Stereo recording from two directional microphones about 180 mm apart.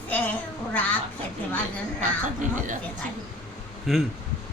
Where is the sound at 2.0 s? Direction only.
45° right (ahead or behind).